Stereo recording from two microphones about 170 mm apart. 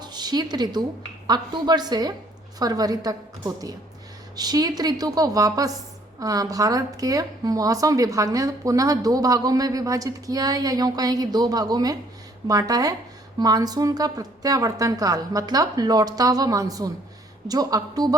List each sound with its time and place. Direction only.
0.0 s a woman's voice: 25° right (ahead or behind)